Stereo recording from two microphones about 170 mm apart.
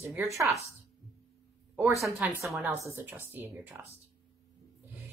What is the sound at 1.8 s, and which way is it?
Speech, 15° right (ahead or behind).